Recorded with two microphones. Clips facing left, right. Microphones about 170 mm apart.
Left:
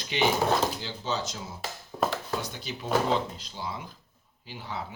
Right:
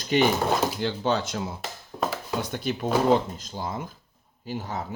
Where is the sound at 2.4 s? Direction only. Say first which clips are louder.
Right 8 dB; 55° right (ahead or behind).